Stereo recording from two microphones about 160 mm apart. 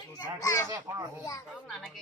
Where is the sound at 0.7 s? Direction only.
25° right (ahead or behind).